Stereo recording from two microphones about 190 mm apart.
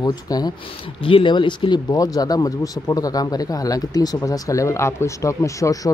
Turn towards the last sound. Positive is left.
turn(degrees=15)  # may be behind; listen again after turning